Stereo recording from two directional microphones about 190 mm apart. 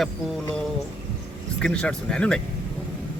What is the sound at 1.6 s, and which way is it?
Speech, 5° left (ahead or behind).